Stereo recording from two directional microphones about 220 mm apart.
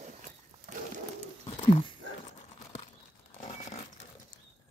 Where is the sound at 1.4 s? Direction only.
25° left (ahead or behind).